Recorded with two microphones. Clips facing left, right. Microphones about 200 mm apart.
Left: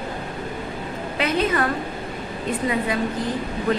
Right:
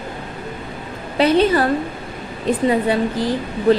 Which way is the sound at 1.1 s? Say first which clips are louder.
Right 8 dB; 30° right (ahead or behind).